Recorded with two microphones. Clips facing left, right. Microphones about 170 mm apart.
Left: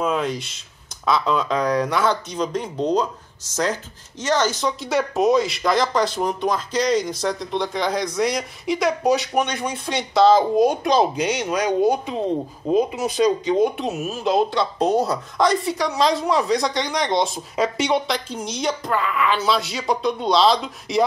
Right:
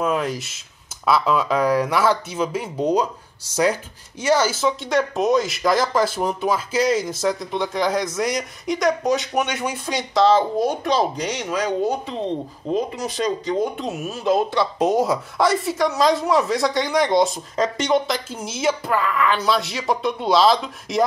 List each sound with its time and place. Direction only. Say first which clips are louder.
0.0 s speech: even; 5° right (ahead or behind)
4.2 s speech: right 2 dB; 10° right (ahead or behind)
10.6 s speech: left 3 dB; 10° left (ahead or behind)
14.8 s speech: right 1 dB; 10° right (ahead or behind)